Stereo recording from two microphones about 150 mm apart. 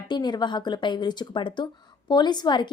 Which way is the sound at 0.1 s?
30° left (ahead or behind).